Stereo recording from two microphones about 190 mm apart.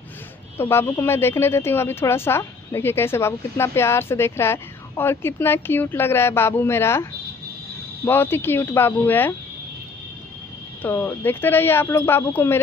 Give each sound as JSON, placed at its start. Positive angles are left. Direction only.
{"t": 0.6, "sound": "speech", "side_deg": 10}
{"t": 10.8, "sound": "speech", "side_deg": 15}